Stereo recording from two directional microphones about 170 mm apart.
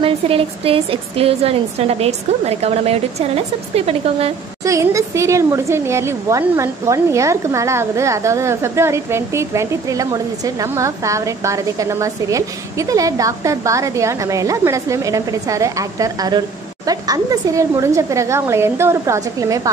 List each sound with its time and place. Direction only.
0.0 s a woman's voice: 35° right (ahead or behind)
4.6 s speech: 20° right (ahead or behind)